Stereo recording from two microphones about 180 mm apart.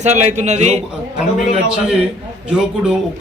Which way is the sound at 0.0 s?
40° right (ahead or behind).